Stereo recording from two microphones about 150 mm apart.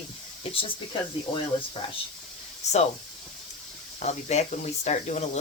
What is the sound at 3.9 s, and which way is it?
Speech, 50° left (ahead or behind).